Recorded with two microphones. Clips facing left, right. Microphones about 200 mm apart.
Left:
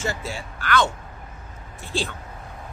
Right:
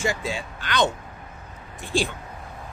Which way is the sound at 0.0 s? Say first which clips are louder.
Right 2 dB; 15° right (ahead or behind).